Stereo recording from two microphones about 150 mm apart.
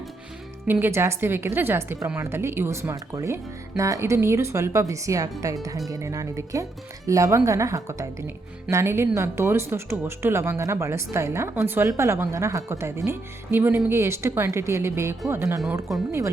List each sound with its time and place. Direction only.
0.7 s speech: 15° right (ahead or behind)